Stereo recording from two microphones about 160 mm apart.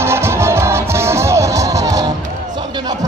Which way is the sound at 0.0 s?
15° right (ahead or behind).